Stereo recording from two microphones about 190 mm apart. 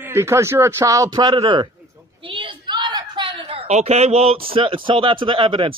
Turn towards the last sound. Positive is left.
turn(degrees=-25)  # may be behind; listen again after turning